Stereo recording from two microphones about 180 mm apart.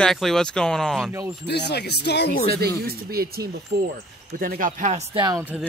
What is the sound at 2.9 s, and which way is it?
Speech, 60° right (ahead or behind).